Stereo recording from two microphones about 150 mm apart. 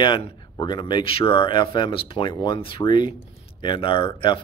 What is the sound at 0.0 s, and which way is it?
Speech, 30° left (ahead or behind).